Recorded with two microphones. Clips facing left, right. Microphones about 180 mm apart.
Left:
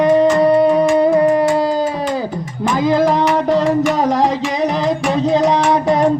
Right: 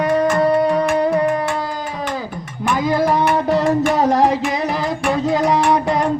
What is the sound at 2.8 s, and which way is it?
Music, 20° left (ahead or behind).